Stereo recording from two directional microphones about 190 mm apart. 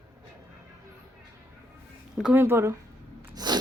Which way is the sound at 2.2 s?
10° right (ahead or behind).